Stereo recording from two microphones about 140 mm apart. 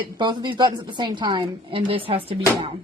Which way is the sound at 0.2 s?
35° right (ahead or behind).